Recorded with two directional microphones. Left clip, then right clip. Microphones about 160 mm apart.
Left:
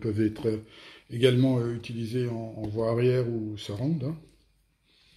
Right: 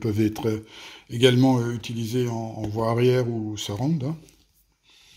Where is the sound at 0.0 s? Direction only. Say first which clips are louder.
Right 3 dB; 60° right (ahead or behind).